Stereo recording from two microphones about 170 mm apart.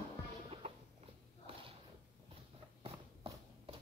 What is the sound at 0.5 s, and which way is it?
Music, 35° right (ahead or behind).